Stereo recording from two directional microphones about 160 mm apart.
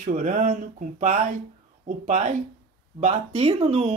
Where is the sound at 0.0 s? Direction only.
55° right (ahead or behind).